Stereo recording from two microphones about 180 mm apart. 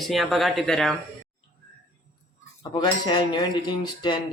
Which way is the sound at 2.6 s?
25° left (ahead or behind).